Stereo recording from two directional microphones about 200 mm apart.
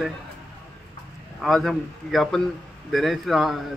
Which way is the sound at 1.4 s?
Centre (ahead or behind).